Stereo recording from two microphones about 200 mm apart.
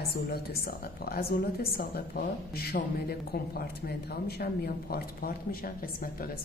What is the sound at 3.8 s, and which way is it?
Speech, 50° left (ahead or behind).